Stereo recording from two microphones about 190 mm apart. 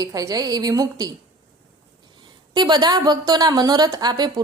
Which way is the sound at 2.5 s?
20° right (ahead or behind).